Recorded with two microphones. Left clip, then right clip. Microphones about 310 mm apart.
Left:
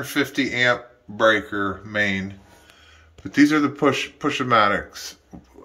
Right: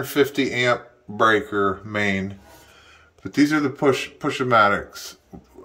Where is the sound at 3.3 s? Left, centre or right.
Centre.